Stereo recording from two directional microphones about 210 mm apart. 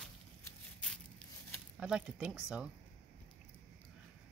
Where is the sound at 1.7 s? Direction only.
5° right (ahead or behind).